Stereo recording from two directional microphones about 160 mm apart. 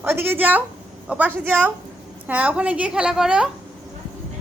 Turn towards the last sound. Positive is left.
turn(degrees=-5)  # may be behind; listen again after turning